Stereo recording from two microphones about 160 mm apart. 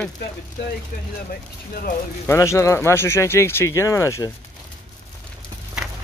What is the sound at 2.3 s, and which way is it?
Speech, 15° left (ahead or behind).